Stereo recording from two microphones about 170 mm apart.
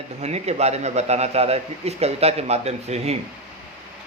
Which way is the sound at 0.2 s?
40° right (ahead or behind).